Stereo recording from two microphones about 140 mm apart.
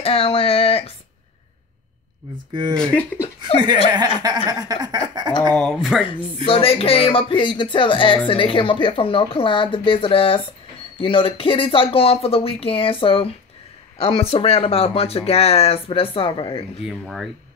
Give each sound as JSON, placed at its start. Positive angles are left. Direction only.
{"t": 0.0, "sound": "a sound", "side_deg": 40}
{"t": 2.5, "sound": "speech", "side_deg": -30}
{"t": 2.8, "sound": "speech", "side_deg": 10}
{"t": 3.5, "sound": "speech", "side_deg": -35}
{"t": 4.5, "sound": "a sound", "side_deg": -25}
{"t": 5.5, "sound": "speech", "side_deg": 0}
{"t": 6.4, "sound": "speech", "side_deg": 40}
{"t": 16.8, "sound": "speech", "side_deg": 0}